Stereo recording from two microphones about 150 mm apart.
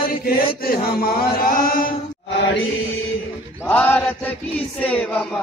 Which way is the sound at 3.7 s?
10° left (ahead or behind).